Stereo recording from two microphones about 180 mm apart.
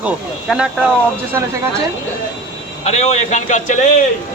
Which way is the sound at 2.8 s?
35° left (ahead or behind).